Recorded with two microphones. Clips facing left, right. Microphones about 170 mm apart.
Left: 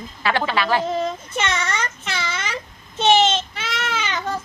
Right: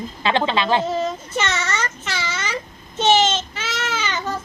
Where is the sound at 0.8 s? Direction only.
5° right (ahead or behind).